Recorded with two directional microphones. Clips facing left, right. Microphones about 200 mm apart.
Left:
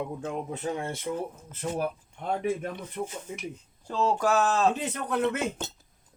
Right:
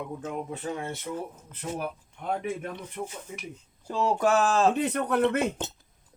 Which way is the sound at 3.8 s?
10° right (ahead or behind).